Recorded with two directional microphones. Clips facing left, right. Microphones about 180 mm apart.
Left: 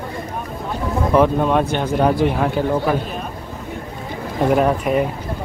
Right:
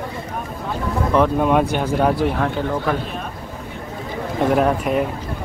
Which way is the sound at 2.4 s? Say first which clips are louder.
Left 3 dB; 10° left (ahead or behind).